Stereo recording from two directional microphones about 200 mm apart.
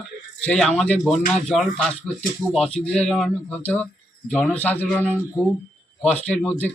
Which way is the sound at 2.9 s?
Centre (ahead or behind).